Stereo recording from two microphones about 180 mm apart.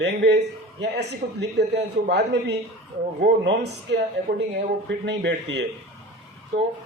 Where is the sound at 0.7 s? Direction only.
70° right (ahead or behind).